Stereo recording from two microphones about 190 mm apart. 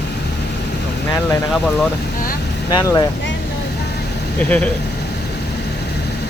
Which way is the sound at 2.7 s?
20° left (ahead or behind).